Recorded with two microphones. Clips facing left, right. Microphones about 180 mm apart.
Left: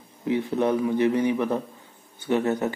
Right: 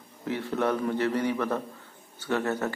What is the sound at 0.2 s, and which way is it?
Speech, 15° left (ahead or behind).